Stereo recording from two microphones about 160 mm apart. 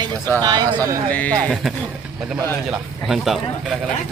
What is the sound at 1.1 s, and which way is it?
A man's voice, 10° left (ahead or behind).